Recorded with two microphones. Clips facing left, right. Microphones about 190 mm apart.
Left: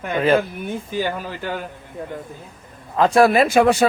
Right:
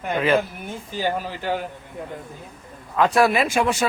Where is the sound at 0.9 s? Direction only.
55° left (ahead or behind).